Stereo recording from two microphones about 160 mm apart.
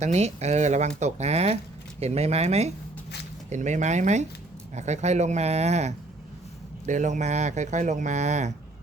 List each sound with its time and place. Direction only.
0.0 s speech: 45° right (ahead or behind)